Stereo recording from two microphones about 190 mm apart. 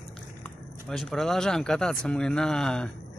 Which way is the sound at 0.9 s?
Centre (ahead or behind).